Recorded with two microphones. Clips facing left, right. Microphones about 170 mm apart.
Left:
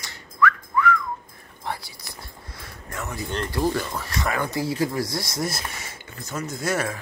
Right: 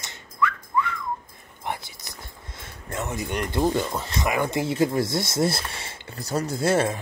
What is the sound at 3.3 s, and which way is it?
Speech, 20° right (ahead or behind).